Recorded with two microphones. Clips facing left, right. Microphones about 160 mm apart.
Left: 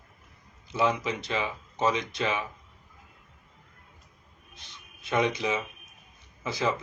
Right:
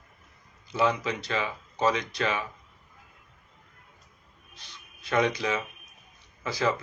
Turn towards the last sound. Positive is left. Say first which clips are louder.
# right 1 dB
turn(degrees=15)  # may be behind; listen again after turning